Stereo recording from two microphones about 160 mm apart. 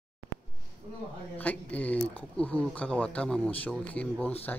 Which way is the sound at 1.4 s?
10° left (ahead or behind).